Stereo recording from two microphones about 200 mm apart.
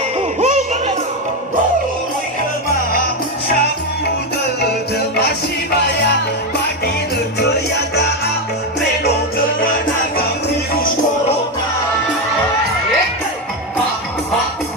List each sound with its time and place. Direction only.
0.3 s music: 35° right (ahead or behind)